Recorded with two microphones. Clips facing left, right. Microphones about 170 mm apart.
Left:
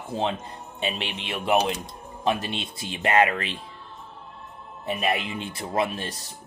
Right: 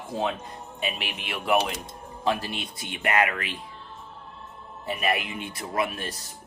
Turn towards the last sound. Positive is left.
turn(degrees=25)  # may be behind; listen again after turning